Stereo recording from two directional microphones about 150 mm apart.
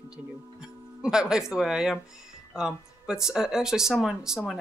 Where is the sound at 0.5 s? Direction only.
5° right (ahead or behind).